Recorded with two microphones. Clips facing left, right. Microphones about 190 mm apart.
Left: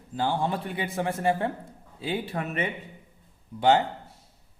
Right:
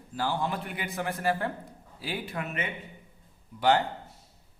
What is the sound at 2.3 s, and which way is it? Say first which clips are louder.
Speech: left 4 dB; 35° left (ahead or behind).